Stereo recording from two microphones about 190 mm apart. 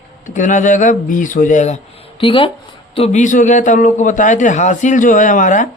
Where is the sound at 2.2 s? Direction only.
25° left (ahead or behind).